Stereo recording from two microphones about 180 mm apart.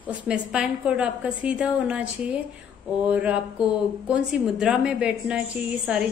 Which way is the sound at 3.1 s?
5° right (ahead or behind).